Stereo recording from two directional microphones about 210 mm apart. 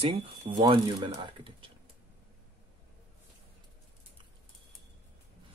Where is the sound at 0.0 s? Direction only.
25° right (ahead or behind).